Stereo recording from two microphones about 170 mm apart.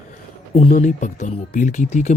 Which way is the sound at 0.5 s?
40° left (ahead or behind).